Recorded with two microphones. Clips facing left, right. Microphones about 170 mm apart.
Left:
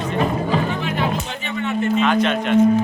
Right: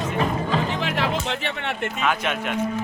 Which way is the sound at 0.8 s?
75° right (ahead or behind).